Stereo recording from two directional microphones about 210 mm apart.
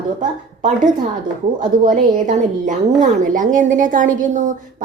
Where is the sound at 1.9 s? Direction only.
35° right (ahead or behind).